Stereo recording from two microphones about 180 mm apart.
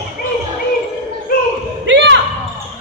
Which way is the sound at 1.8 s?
85° right.